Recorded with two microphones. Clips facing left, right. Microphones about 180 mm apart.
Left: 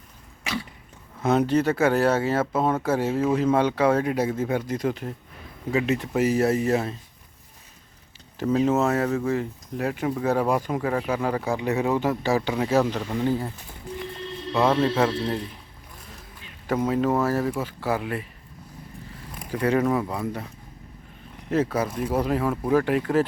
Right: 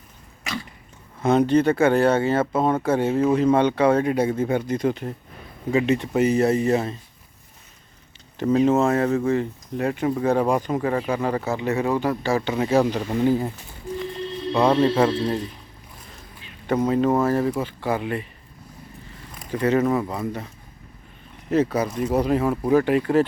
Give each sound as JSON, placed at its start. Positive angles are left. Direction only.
{"t": 1.2, "sound": "speech", "side_deg": 5}
{"t": 8.4, "sound": "speech", "side_deg": 5}
{"t": 11.7, "sound": "speech", "side_deg": 0}
{"t": 11.9, "sound": "speech", "side_deg": 15}
{"t": 12.3, "sound": "speech", "side_deg": 0}
{"t": 12.8, "sound": "speech", "side_deg": -15}
{"t": 14.5, "sound": "speech", "side_deg": 0}
{"t": 16.6, "sound": "speech", "side_deg": 5}
{"t": 19.5, "sound": "speech", "side_deg": 10}
{"t": 21.5, "sound": "speech", "side_deg": 5}